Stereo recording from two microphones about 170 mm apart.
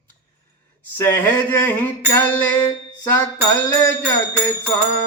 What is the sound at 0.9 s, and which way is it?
A man's voice, 10° left (ahead or behind).